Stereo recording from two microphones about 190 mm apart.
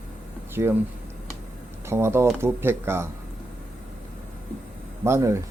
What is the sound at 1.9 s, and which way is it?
Speech, 15° right (ahead or behind).